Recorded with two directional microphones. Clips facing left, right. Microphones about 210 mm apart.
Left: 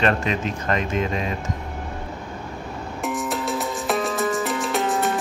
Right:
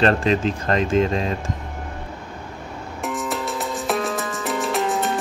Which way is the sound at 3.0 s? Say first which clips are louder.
Even; centre (ahead or behind).